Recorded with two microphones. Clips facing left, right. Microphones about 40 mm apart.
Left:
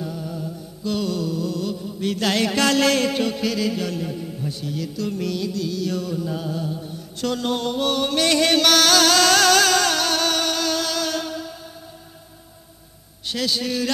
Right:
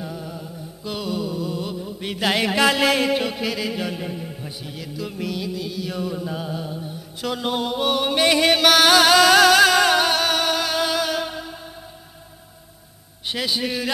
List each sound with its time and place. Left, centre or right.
0.0 s music: centre
13.3 s a man's voice: right